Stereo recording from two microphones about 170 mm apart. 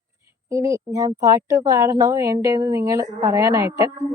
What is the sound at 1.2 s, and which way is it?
A woman's voice, 20° right (ahead or behind).